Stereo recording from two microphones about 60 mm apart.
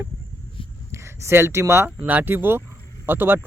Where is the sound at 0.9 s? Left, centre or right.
Right.